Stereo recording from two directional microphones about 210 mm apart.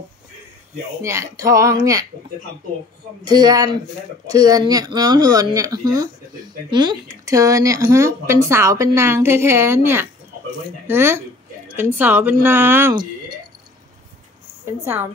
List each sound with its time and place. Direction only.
1.0 s speech: 15° right (ahead or behind)
3.3 s speech: 20° right (ahead or behind)
12.9 s a sound: 20° right (ahead or behind)